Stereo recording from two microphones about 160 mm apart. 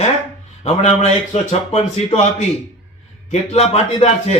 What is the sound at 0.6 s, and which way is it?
Speech, 45° left (ahead or behind).